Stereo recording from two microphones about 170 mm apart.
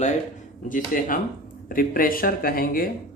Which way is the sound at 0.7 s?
55° left (ahead or behind).